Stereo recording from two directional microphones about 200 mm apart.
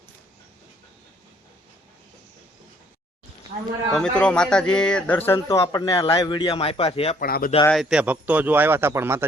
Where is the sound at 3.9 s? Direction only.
5° left (ahead or behind); by 7.2 s 30° left (ahead or behind).